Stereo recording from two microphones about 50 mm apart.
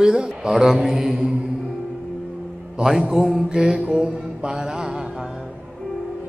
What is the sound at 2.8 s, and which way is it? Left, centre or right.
A man's voice, centre.